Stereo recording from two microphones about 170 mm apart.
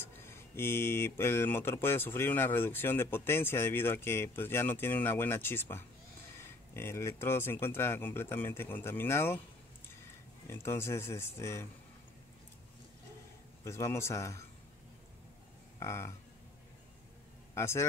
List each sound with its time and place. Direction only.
0.0 s speech: 15° left (ahead or behind)
10.4 s speech: 15° left (ahead or behind)
13.7 s speech: 15° left (ahead or behind)
15.8 s speech: 15° left (ahead or behind)
17.6 s speech: 15° left (ahead or behind)